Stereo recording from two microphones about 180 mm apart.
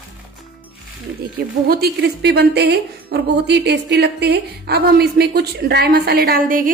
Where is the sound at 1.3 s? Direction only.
60° right (ahead or behind).